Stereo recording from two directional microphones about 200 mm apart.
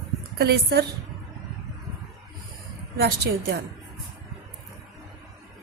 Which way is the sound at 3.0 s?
50° right (ahead or behind).